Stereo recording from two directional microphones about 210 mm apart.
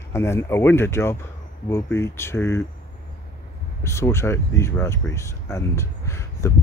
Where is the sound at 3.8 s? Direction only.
15° left (ahead or behind).